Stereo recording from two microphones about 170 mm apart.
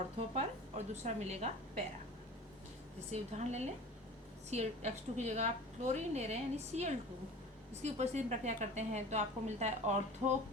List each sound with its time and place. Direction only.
0.2 s a woman's voice: 40° right (ahead or behind)
3.1 s a woman's voice: 40° right (ahead or behind)